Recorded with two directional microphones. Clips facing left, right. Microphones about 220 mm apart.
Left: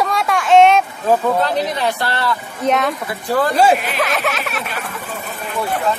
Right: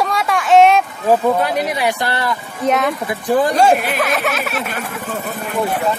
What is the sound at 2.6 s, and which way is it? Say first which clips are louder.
Speech: right 1 dB; centre (ahead or behind).